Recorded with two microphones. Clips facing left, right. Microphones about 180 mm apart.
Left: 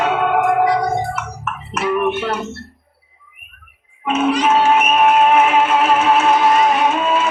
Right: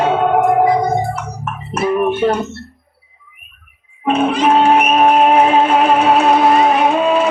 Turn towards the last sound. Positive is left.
turn(degrees=-35)  # may be behind; listen again after turning